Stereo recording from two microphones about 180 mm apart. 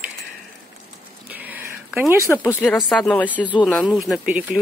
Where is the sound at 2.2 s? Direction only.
15° left (ahead or behind).